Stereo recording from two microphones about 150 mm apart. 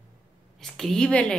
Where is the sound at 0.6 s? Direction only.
5° left (ahead or behind).